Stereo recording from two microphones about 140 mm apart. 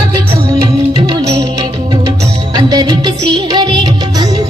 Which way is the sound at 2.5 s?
30° right (ahead or behind).